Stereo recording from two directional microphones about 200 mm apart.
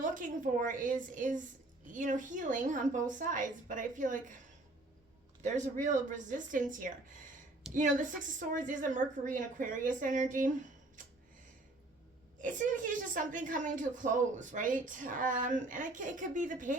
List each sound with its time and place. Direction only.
0.0 s a woman's voice: 40° right (ahead or behind)
5.4 s a woman's voice: 35° right (ahead or behind)
12.4 s a woman's voice: 40° right (ahead or behind)